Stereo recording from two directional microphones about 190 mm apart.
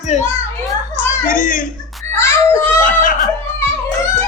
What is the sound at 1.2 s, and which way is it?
Speech, 45° left (ahead or behind).